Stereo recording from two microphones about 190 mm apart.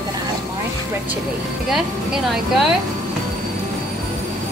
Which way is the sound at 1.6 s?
Centre (ahead or behind).